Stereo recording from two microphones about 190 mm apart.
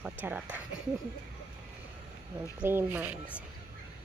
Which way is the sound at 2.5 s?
10° right (ahead or behind).